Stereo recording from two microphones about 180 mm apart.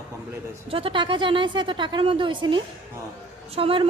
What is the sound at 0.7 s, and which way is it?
Speech, 30° right (ahead or behind).